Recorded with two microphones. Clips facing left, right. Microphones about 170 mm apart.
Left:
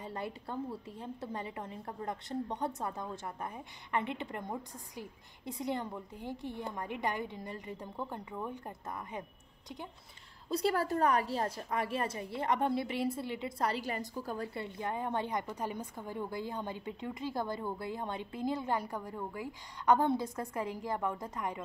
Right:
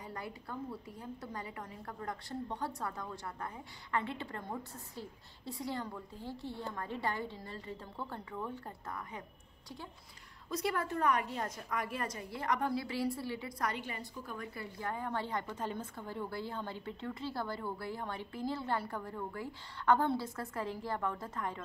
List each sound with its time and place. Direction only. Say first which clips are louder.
0.0 s a woman's voice: left 4 dB; 25° left (ahead or behind)
10.5 s a woman's voice: left 4 dB; 30° left (ahead or behind); by 21.6 s 15° left (ahead or behind)